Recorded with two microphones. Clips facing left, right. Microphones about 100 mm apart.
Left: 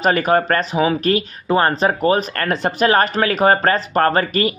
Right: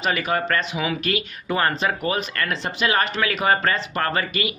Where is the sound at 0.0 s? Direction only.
45° left (ahead or behind).